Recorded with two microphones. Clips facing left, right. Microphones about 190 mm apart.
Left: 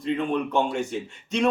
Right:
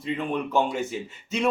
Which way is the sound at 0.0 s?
5° right (ahead or behind).